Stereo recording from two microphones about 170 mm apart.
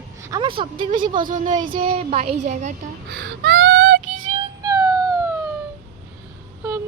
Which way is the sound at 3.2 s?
90° right.